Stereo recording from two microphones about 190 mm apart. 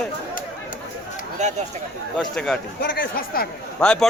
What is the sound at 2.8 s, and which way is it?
Speech, 55° left (ahead or behind).